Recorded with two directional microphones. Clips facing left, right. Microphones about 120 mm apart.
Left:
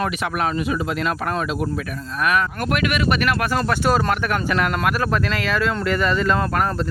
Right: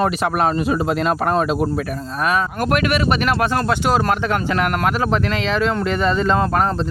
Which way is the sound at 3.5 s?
15° right (ahead or behind).